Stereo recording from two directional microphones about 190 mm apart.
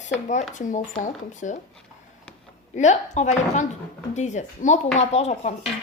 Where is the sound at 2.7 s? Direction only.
40° left (ahead or behind).